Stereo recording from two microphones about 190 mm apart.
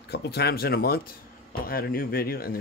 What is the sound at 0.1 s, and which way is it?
Speech, 55° left (ahead or behind).